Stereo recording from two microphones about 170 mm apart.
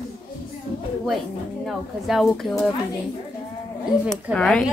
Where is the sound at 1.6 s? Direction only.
Centre (ahead or behind).